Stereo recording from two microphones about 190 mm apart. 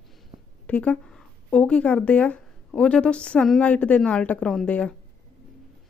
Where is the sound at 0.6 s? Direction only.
5° left (ahead or behind).